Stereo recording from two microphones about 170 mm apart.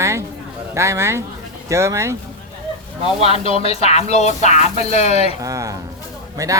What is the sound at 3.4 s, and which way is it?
Speech, 35° left (ahead or behind).